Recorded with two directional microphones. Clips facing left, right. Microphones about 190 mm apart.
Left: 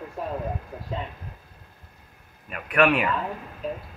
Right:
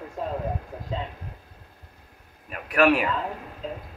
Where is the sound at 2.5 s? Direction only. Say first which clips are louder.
Right 1 dB; 40° right (ahead or behind).